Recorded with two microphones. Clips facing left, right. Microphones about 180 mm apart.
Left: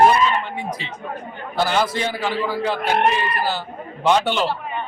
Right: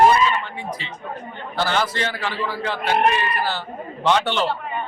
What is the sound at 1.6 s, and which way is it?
A man's voice, 10° left (ahead or behind).